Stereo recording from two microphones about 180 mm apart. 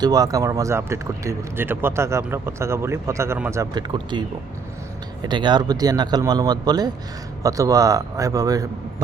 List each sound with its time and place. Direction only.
0.0 s speech: 20° right (ahead or behind)